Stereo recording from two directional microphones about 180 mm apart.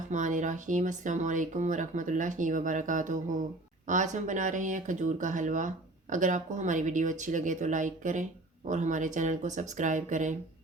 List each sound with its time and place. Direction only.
0.1 s speech: 45° right (ahead or behind)